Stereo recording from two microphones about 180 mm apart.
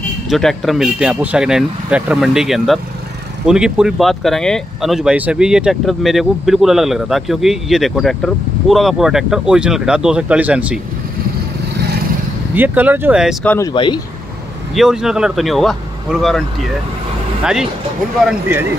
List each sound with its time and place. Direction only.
0.3 s speech: centre (ahead or behind)
12.5 s speech: 10° right (ahead or behind)
13.7 s speech: 25° left (ahead or behind)
14.8 s speech: 5° right (ahead or behind)